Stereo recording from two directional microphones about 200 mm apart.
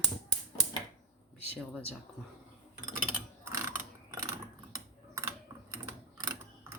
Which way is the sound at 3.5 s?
15° right (ahead or behind).